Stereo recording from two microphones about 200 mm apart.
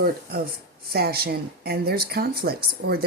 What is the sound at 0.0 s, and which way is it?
Speech, 50° right (ahead or behind).